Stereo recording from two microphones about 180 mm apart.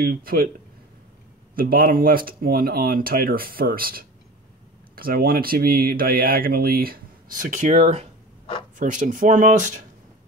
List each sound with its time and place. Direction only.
0.0 s speech: 55° right (ahead or behind)
1.5 s speech: 55° right (ahead or behind)